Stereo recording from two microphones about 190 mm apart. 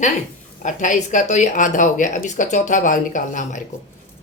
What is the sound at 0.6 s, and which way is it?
A woman's voice, 40° left (ahead or behind).